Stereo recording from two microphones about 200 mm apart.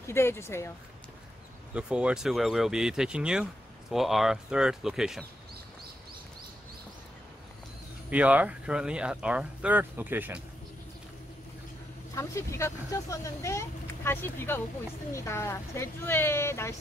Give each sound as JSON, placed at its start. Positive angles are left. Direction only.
{"t": 0.0, "sound": "speech", "side_deg": 10}
{"t": 1.7, "sound": "speech", "side_deg": -5}
{"t": 8.1, "sound": "speech", "side_deg": -5}
{"t": 12.2, "sound": "speech", "side_deg": 15}